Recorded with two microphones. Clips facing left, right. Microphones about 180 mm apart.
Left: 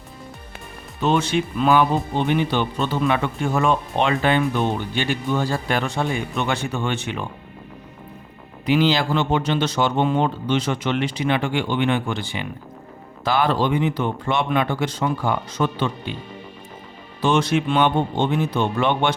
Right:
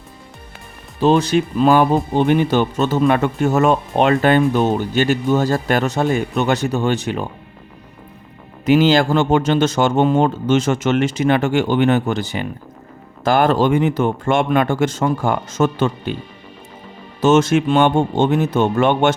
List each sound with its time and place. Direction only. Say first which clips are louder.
0.9 s speech: right 6 dB; 35° right (ahead or behind)
8.6 s speech: right 6 dB; 45° right (ahead or behind)
17.2 s speech: right 6 dB; 45° right (ahead or behind)